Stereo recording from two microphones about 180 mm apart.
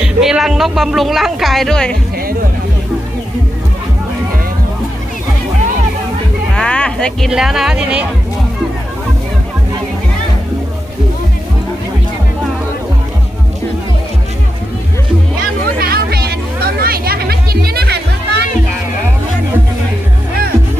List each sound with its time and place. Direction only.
0.0 s speech: 5° right (ahead or behind)
6.6 s speech: 5° left (ahead or behind)
15.8 s a sound: 60° right (ahead or behind)